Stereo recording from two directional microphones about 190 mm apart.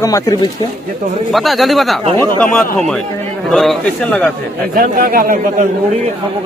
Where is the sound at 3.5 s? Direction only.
Centre (ahead or behind).